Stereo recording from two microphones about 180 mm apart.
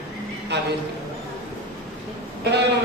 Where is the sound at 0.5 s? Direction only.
70° right (ahead or behind).